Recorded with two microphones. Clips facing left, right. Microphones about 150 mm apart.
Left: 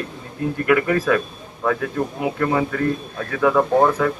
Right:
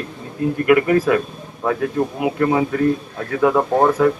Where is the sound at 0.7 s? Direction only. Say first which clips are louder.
Right 2 dB; 10° right (ahead or behind).